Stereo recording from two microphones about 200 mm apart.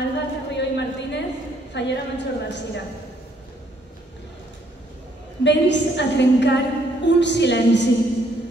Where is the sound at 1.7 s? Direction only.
60° left (ahead or behind).